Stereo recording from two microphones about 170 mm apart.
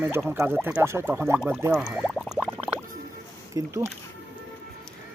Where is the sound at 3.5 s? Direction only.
20° right (ahead or behind).